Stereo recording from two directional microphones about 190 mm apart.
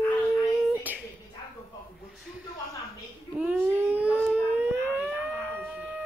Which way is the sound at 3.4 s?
5° right (ahead or behind).